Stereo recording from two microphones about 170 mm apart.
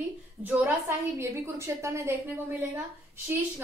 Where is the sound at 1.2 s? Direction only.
15° right (ahead or behind).